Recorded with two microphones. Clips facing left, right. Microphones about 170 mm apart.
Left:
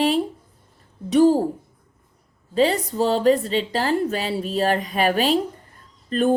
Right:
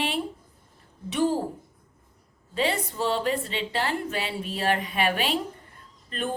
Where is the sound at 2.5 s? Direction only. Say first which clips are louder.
Left 7 dB; 40° left (ahead or behind).